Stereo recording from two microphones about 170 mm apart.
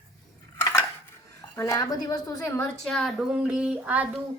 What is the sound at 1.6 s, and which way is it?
A woman's voice, 20° left (ahead or behind).